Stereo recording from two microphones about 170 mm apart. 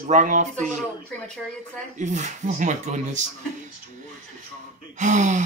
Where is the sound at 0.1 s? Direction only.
45° right (ahead or behind).